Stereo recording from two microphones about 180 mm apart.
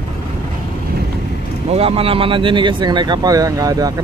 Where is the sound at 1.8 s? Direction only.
30° right (ahead or behind).